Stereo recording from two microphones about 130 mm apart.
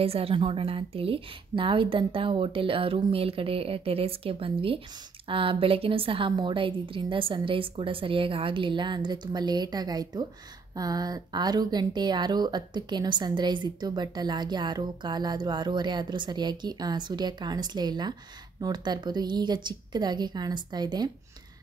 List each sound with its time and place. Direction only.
0.0 s a woman's voice: 50° right (ahead or behind)